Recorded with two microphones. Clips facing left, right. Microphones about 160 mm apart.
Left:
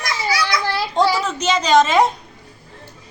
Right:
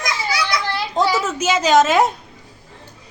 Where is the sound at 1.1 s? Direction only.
5° right (ahead or behind).